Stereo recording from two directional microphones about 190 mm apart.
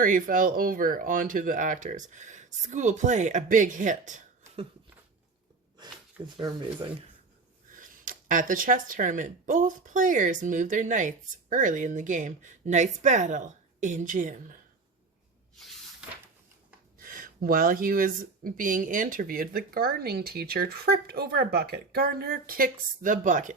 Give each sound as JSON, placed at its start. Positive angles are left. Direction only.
{"t": 0.0, "sound": "speech", "side_deg": -45}
{"t": 6.2, "sound": "speech", "side_deg": -25}
{"t": 7.7, "sound": "speech", "side_deg": -45}
{"t": 15.5, "sound": "spray", "side_deg": 0}
{"t": 17.0, "sound": "speech", "side_deg": -45}